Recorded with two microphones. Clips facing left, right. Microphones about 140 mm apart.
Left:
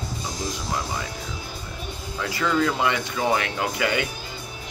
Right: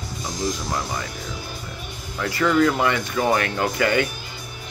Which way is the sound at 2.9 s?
50° right (ahead or behind).